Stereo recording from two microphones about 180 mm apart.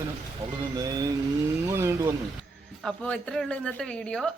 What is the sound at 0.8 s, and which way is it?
Vehicle, 20° right (ahead or behind).